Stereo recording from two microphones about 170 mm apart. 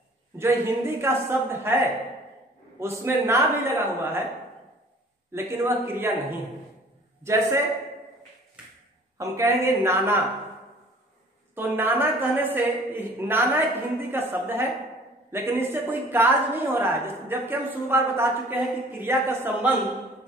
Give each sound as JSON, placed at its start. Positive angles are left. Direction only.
{"t": 0.4, "sound": "a woman's voice", "side_deg": -15}
{"t": 5.3, "sound": "a woman's voice", "side_deg": -15}
{"t": 7.2, "sound": "a woman's voice", "side_deg": -15}
{"t": 9.2, "sound": "a woman's voice", "side_deg": -15}
{"t": 11.5, "sound": "a woman's voice", "side_deg": -10}